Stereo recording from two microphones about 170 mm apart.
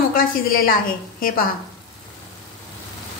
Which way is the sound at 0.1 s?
55° left (ahead or behind).